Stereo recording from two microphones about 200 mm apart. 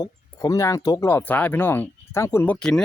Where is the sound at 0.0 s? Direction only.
20° left (ahead or behind).